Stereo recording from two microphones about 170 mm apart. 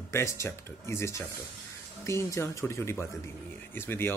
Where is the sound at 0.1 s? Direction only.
15° left (ahead or behind).